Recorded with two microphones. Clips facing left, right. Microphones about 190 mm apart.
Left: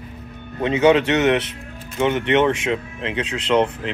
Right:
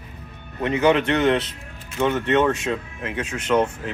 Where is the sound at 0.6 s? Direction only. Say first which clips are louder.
Left 3 dB; 20° left (ahead or behind).